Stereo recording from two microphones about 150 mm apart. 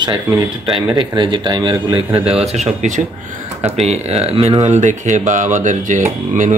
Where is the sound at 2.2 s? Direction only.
45° right (ahead or behind).